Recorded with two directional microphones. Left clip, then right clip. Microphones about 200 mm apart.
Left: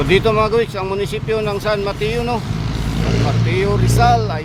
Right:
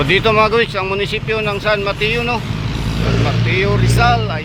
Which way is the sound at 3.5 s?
15° left (ahead or behind).